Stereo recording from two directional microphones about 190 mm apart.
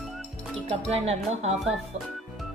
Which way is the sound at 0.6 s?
35° right (ahead or behind).